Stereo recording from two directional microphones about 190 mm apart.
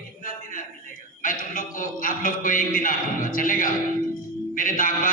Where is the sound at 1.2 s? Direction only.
45° left (ahead or behind).